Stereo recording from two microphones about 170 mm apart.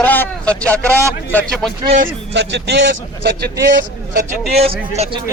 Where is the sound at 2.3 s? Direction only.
90° right.